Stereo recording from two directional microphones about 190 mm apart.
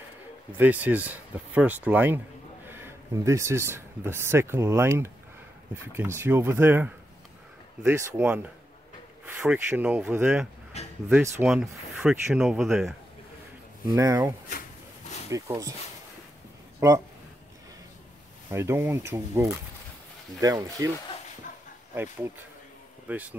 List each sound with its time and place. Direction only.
0.5 s speech: 10° right (ahead or behind)
10.8 s a sound: 35° left (ahead or behind)
11.1 s speech: 10° right (ahead or behind)
13.8 s speech: 15° right (ahead or behind)
16.8 s speech: 15° right (ahead or behind)
18.5 s speech: 15° right (ahead or behind)
21.9 s speech: 10° right (ahead or behind)